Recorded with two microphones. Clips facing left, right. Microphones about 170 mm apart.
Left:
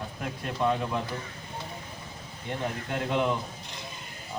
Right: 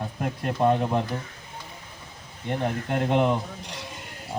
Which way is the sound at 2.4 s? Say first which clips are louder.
Right 5 dB; 50° right (ahead or behind).